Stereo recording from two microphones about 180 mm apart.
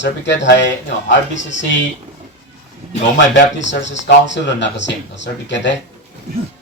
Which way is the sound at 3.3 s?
90° left.